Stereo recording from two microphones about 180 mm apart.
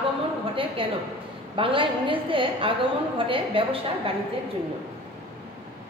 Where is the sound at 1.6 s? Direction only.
30° right (ahead or behind).